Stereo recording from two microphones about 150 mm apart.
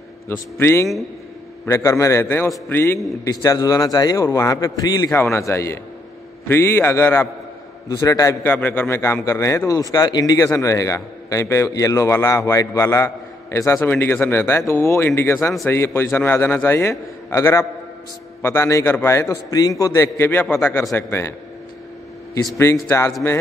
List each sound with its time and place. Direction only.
0.6 s a man's voice: 15° left (ahead or behind)
22.3 s a man's voice: 20° left (ahead or behind)